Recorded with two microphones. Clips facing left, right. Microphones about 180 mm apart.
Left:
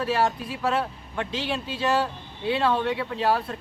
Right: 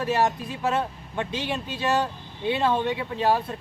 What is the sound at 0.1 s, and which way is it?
Speech, 20° right (ahead or behind).